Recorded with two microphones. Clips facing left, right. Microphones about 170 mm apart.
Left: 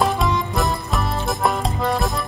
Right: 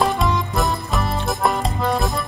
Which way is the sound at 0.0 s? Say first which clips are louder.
Even; centre (ahead or behind).